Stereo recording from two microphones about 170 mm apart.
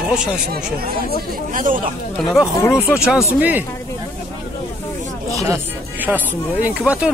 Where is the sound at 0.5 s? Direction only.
65° right (ahead or behind).